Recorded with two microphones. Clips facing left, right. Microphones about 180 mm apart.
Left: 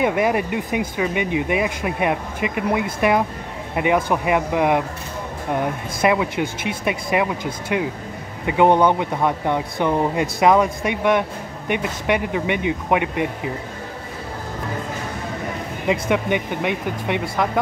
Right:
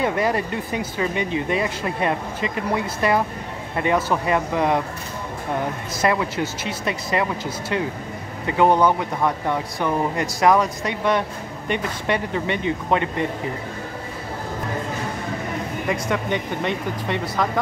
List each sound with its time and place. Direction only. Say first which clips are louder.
0.0 s speech: left 2 dB; 15° left (ahead or behind)
6.0 s speech: left 2 dB; 15° left (ahead or behind)
8.5 s speech: left 2 dB; 20° left (ahead or behind)
15.9 s speech: left 4 dB; 15° left (ahead or behind)